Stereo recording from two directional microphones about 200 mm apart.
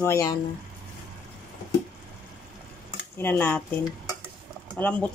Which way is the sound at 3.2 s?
10° left (ahead or behind).